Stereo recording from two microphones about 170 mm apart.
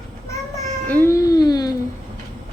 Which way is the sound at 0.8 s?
10° left (ahead or behind).